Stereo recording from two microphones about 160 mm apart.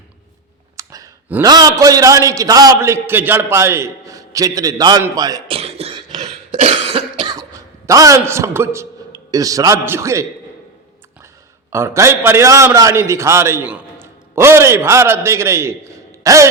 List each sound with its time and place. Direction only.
0.8 s clicking: 20° right (ahead or behind)
1.5 s a man's voice: 25° right (ahead or behind)
5.5 s cough: 40° right (ahead or behind)
7.9 s a man's voice: 20° right (ahead or behind)
11.7 s a man's voice: 15° right (ahead or behind)